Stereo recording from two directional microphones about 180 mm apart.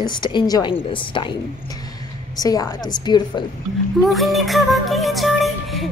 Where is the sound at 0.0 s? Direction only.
25° left (ahead or behind).